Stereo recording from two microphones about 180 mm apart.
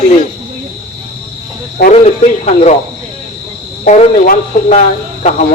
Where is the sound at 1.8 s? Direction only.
60° left (ahead or behind).